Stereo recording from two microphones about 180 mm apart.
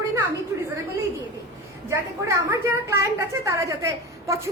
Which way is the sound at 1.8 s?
15° right (ahead or behind).